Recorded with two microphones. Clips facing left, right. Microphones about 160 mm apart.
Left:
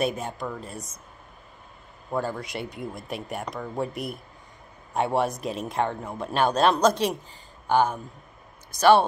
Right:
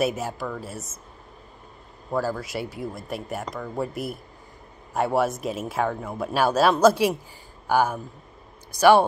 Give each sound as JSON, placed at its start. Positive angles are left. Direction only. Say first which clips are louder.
{"t": 0.0, "sound": "speech", "louder": "right 2 dB", "side_deg": -5}
{"t": 2.0, "sound": "speech", "louder": "right 2 dB", "side_deg": -5}